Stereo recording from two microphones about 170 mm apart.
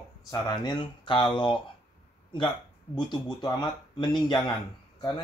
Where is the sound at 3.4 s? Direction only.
25° left (ahead or behind).